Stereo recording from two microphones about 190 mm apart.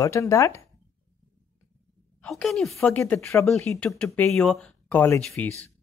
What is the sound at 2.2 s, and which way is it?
A woman's voice, centre (ahead or behind).